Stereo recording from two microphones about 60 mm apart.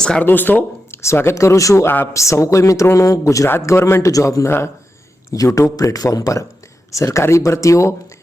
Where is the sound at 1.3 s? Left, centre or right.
Left.